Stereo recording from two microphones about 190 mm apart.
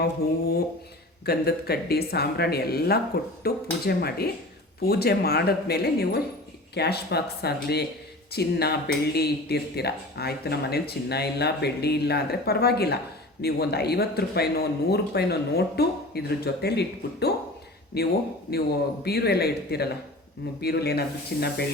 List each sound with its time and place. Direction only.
0.0 s speech: 55° left (ahead or behind)